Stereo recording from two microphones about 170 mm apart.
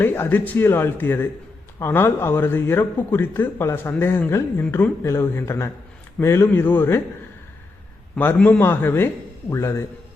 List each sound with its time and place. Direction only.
0.0 s a man's voice: 10° left (ahead or behind)
8.1 s a man's voice: 10° left (ahead or behind)